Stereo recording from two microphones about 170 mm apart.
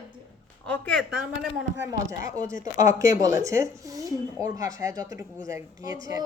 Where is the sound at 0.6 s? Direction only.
10° left (ahead or behind).